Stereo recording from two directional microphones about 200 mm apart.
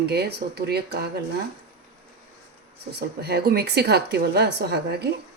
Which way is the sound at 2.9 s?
55° right (ahead or behind).